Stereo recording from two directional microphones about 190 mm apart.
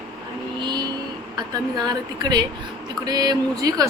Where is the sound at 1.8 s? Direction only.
20° right (ahead or behind).